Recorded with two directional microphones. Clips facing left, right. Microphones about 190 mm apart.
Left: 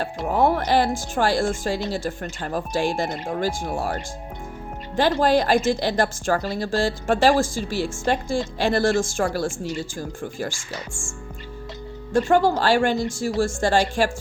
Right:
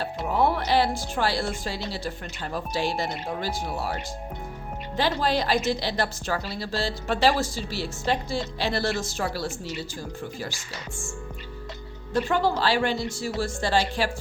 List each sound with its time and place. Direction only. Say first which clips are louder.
0.0 s a woman's voice: left 3 dB; 45° left (ahead or behind)
4.9 s a woman's voice: left 6 dB; 50° left (ahead or behind)
12.1 s a woman's voice: left 5 dB; 45° left (ahead or behind)